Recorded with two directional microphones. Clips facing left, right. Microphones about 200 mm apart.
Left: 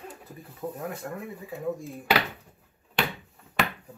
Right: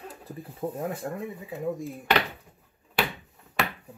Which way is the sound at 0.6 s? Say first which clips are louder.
Right 3 dB; 30° right (ahead or behind).